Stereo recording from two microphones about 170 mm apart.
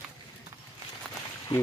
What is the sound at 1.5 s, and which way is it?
Speech, 30° left (ahead or behind).